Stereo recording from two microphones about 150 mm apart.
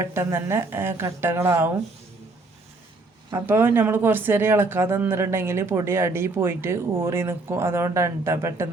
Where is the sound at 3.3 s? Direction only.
15° right (ahead or behind).